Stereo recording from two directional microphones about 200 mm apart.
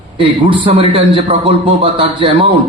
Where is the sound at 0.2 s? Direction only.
25° right (ahead or behind).